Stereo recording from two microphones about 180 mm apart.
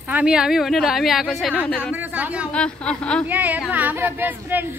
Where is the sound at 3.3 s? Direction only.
10° right (ahead or behind).